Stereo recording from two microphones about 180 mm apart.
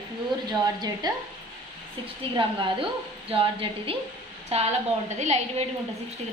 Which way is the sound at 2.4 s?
30° right (ahead or behind).